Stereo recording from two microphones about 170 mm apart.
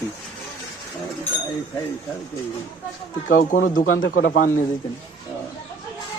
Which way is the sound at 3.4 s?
50° left (ahead or behind).